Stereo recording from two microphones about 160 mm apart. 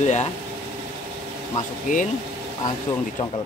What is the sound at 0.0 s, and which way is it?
Speech, 45° left (ahead or behind).